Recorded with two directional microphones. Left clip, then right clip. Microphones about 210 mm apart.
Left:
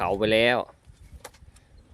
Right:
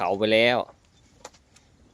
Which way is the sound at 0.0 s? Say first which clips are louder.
Right 1 dB; 5° left (ahead or behind).